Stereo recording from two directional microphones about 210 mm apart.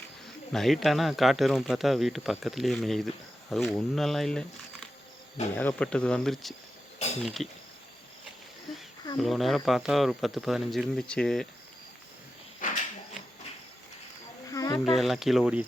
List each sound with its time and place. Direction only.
0.5 s speech: centre (ahead or behind)
5.5 s speech: 5° left (ahead or behind)
9.1 s speech: centre (ahead or behind)
14.5 s wild animals: 15° left (ahead or behind)
14.8 s speech: centre (ahead or behind)